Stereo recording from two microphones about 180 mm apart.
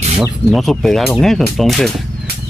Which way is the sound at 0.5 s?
Centre (ahead or behind).